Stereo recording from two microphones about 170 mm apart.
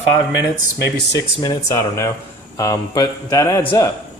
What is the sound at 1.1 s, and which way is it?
Speech, 20° left (ahead or behind).